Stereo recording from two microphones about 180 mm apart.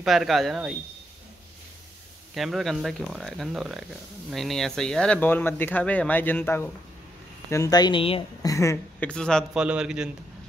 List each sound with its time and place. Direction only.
0.0 s speech: centre (ahead or behind)
2.3 s a woman's voice: centre (ahead or behind); by 8.5 s 30° left (ahead or behind)
8.5 s speech: 15° left (ahead or behind)
9.1 s speech: 5° left (ahead or behind)